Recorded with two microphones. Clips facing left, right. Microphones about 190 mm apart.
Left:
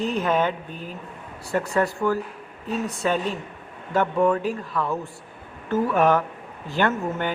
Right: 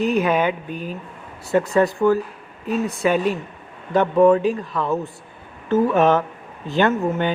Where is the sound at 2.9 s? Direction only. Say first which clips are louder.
Right 5 dB; 10° right (ahead or behind).